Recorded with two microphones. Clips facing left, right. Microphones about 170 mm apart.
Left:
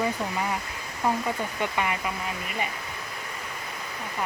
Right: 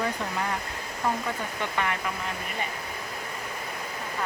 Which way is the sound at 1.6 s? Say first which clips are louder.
Left 1 dB; 15° left (ahead or behind).